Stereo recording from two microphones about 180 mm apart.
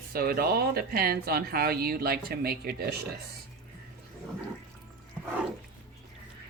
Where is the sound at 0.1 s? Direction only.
55° right (ahead or behind).